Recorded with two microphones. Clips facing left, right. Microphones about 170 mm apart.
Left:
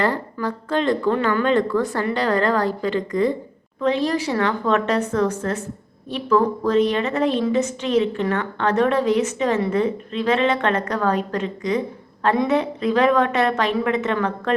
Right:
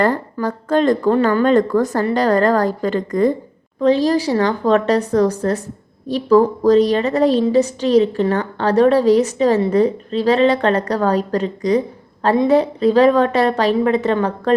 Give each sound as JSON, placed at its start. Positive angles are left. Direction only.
{"t": 0.0, "sound": "a woman's voice", "side_deg": -45}
{"t": 3.8, "sound": "a woman's voice", "side_deg": -35}